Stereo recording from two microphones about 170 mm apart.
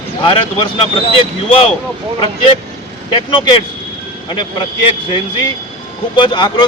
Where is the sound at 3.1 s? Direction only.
30° left (ahead or behind).